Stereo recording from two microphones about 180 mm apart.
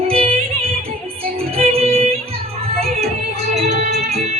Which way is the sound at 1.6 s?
35° right (ahead or behind).